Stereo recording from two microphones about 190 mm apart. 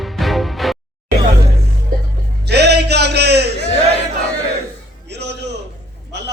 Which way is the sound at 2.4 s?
60° right (ahead or behind).